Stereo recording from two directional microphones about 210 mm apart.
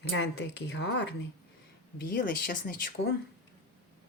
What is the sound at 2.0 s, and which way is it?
Speech, 45° left (ahead or behind).